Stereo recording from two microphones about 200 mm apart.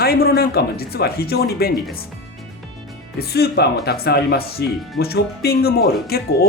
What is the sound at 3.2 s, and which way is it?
Speech, 50° left (ahead or behind).